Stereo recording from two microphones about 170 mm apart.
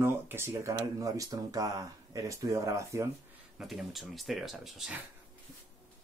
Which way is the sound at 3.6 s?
Centre (ahead or behind).